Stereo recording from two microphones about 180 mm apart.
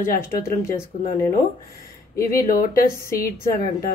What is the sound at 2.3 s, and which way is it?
Speech, 50° left (ahead or behind).